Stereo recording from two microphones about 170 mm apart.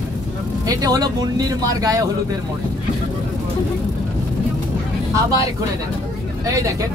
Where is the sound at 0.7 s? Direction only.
20° right (ahead or behind).